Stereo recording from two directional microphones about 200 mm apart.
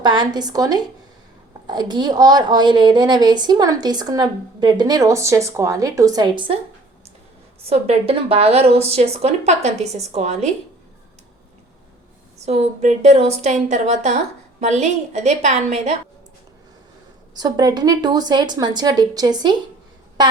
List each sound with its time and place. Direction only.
0.0 s a woman's voice: 20° right (ahead or behind)
7.6 s a woman's voice: 30° right (ahead or behind)
12.5 s a woman's voice: 35° right (ahead or behind)
17.3 s a woman's voice: 20° right (ahead or behind)